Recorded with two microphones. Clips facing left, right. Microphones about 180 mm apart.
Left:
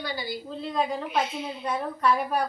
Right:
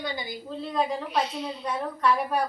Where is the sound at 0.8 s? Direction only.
Centre (ahead or behind).